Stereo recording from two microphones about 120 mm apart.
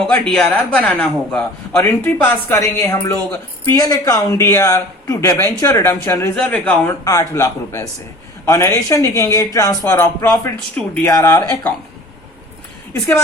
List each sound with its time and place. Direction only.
0.0 s a man's voice: 5° left (ahead or behind)
2.6 s speech: 25° left (ahead or behind)
12.9 s speech: 20° left (ahead or behind)